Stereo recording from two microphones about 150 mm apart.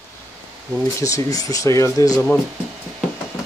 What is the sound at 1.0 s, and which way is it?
Speech, 25° left (ahead or behind).